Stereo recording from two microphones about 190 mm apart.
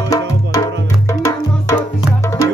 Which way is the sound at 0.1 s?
20° left (ahead or behind).